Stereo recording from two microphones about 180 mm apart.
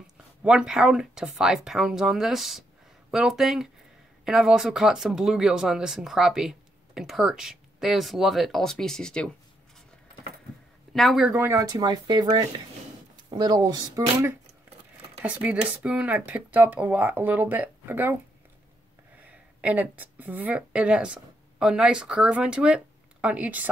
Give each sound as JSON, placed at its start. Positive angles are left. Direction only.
{"t": 0.0, "sound": "speech", "side_deg": -5}
{"t": 10.9, "sound": "speech", "side_deg": 0}
{"t": 15.2, "sound": "speech", "side_deg": -5}
{"t": 19.6, "sound": "speech", "side_deg": -10}